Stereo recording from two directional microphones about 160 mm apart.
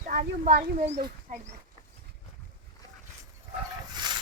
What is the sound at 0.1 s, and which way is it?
Speech, 70° right (ahead or behind).